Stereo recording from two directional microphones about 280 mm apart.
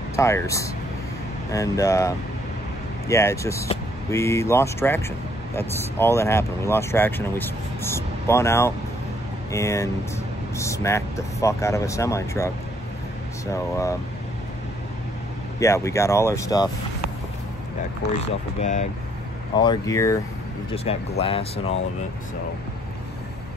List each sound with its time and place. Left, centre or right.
0.1 s speech: centre
13.5 s speech: centre
15.6 s speech: centre
18.6 s speech: left